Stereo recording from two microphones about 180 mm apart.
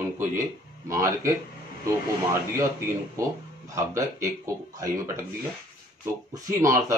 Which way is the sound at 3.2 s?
15° right (ahead or behind).